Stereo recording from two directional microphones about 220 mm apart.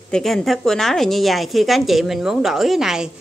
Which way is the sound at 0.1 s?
Centre (ahead or behind).